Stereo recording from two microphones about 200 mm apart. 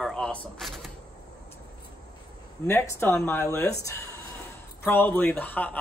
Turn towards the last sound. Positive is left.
turn(degrees=10)  # may be behind; listen again after turning